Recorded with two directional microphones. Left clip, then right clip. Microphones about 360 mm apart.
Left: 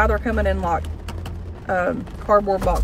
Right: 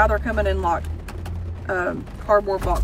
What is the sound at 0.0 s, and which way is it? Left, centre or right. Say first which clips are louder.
Speech: even; left.